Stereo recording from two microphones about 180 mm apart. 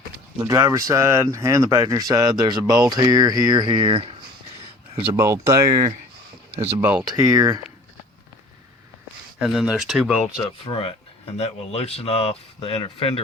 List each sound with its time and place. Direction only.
0.4 s speech: 20° right (ahead or behind)
5.1 s speech: 15° right (ahead or behind)
9.4 s speech: 5° right (ahead or behind)
10.3 s speech: 25° left (ahead or behind)